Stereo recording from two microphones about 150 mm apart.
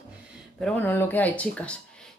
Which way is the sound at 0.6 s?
10° left (ahead or behind).